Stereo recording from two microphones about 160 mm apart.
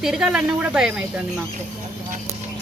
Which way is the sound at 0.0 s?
5° right (ahead or behind).